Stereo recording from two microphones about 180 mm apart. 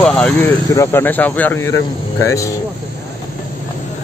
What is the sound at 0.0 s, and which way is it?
Speech, 5° left (ahead or behind).